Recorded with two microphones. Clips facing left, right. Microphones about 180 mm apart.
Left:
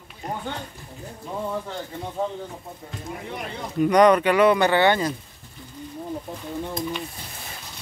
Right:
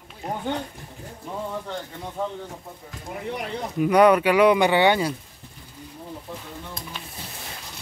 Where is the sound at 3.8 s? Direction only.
5° right (ahead or behind).